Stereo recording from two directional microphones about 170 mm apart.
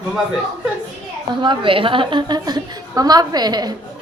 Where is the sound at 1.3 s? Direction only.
30° right (ahead or behind).